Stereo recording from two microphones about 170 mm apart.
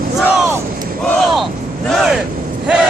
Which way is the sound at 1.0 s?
5° left (ahead or behind).